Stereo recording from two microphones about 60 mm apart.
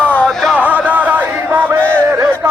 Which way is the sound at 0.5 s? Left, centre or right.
Right.